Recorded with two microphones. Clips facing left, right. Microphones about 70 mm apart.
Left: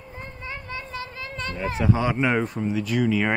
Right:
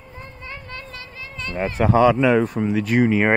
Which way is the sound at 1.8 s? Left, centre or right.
Right.